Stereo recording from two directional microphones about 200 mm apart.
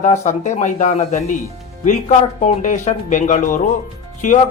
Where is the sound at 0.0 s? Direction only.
35° left (ahead or behind).